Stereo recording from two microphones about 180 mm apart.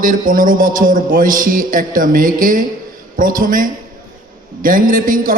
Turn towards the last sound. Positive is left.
turn(degrees=-50)  # may be behind; listen again after turning